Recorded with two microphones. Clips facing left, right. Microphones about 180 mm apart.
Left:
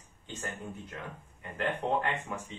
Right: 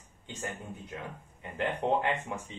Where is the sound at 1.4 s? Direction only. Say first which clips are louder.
Right 1 dB; 25° right (ahead or behind).